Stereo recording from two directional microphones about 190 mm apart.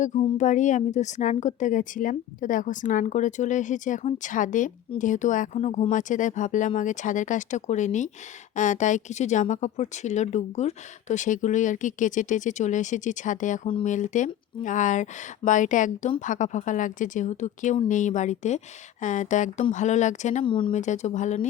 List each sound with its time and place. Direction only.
0.3 s a woman's voice: 40° left (ahead or behind)
20.4 s speech: 25° left (ahead or behind)
20.7 s a woman's voice: 40° left (ahead or behind)